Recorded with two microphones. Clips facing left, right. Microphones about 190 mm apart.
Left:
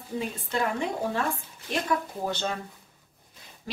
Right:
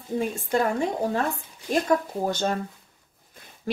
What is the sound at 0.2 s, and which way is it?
A woman's voice, 45° right (ahead or behind).